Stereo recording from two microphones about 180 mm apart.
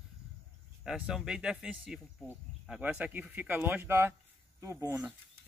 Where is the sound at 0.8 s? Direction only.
Centre (ahead or behind).